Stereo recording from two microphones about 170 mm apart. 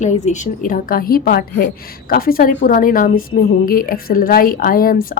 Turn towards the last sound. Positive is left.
turn(degrees=55)  # may be behind; listen again after turning